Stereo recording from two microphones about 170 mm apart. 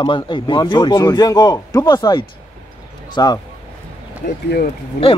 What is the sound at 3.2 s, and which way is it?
Speech, 20° left (ahead or behind).